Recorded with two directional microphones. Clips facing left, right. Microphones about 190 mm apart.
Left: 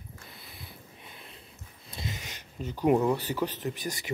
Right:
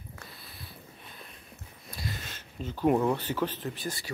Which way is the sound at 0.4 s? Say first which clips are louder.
Even; 20° left (ahead or behind).